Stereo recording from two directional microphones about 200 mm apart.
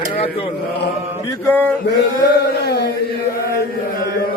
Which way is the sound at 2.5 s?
55° left (ahead or behind).